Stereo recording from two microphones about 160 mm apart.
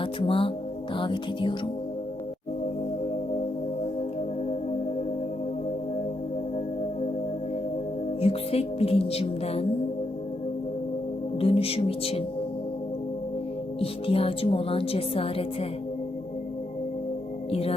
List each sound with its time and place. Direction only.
0.0 s music: 35° left (ahead or behind)
8.2 s a woman's voice: 40° left (ahead or behind)
11.3 s speech: 35° left (ahead or behind)
13.7 s a woman's voice: 35° left (ahead or behind)
17.5 s a woman's voice: 35° left (ahead or behind)